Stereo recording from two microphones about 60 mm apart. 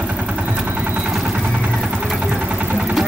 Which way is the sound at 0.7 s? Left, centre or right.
Right.